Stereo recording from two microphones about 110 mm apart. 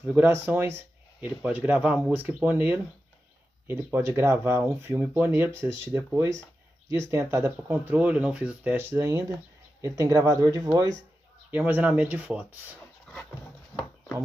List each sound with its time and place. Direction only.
0.0 s speech: 20° right (ahead or behind)
11.5 s speech: 15° right (ahead or behind)